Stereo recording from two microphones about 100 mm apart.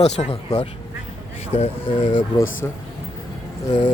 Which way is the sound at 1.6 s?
60° left (ahead or behind).